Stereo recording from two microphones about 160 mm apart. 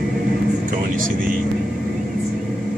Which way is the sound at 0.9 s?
55° right (ahead or behind).